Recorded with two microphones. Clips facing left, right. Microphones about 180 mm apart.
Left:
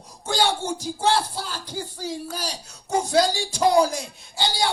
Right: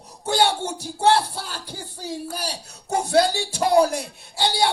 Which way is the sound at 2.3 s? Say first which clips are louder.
Right 1 dB; 60° right (ahead or behind).